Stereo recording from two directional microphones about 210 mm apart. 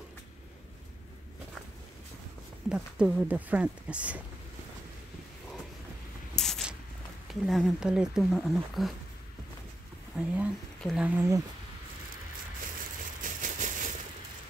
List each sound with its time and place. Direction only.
2.7 s speech: 5° right (ahead or behind)
6.3 s a sound: centre (ahead or behind)
7.2 s speech: centre (ahead or behind)
10.1 s speech: 5° right (ahead or behind)
11.1 s speech: 15° right (ahead or behind)
13.2 s a sound: 40° right (ahead or behind)